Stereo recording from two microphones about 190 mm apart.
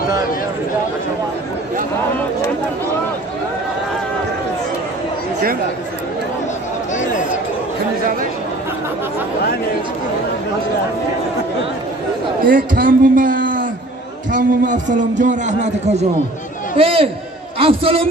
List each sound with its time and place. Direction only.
12.5 s a man's voice: 45° right (ahead or behind); by 18.1 s 30° right (ahead or behind)